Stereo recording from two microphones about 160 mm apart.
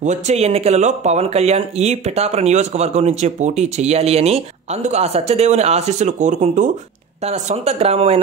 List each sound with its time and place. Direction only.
0.0 s speech: 45° right (ahead or behind)